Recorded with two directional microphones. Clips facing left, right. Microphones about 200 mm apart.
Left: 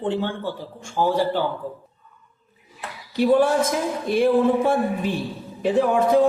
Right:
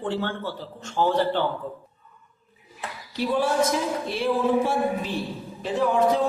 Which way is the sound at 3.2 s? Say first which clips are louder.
Left 5 dB; 50° left (ahead or behind).